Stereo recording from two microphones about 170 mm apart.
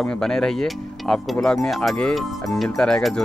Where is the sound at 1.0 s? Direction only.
5° left (ahead or behind).